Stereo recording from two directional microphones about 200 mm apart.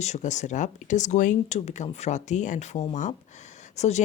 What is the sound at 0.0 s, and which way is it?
Speech, 35° left (ahead or behind).